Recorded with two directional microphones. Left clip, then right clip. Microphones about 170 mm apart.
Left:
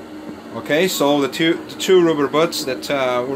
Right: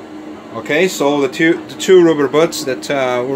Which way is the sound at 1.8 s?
25° right (ahead or behind).